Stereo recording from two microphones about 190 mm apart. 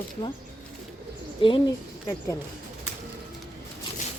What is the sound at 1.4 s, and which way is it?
Speech, 25° left (ahead or behind).